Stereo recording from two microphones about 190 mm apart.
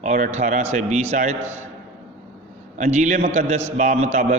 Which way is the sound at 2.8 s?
40° right (ahead or behind).